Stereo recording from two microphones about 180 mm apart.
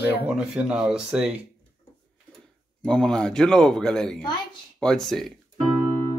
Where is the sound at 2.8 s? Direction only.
5° left (ahead or behind).